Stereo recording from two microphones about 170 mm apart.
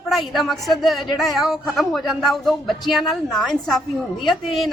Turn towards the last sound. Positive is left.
turn(degrees=0)  # may be behind; listen again after turning